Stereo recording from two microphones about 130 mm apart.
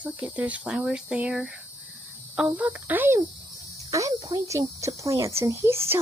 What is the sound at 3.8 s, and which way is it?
Speech, 25° right (ahead or behind).